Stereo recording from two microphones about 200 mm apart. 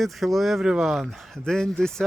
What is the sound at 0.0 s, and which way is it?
Speech, centre (ahead or behind).